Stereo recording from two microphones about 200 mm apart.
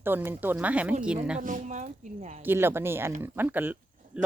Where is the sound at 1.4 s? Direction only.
40° right (ahead or behind).